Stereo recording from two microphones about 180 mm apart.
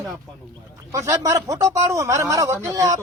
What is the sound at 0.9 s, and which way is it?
Speech, 15° right (ahead or behind).